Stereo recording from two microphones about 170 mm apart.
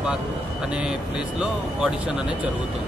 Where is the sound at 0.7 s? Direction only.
5° right (ahead or behind).